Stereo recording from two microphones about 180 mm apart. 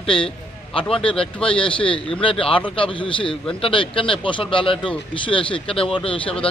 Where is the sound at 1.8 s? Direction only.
30° left (ahead or behind).